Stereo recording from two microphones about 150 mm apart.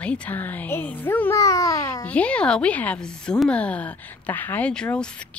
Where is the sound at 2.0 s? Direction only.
10° left (ahead or behind).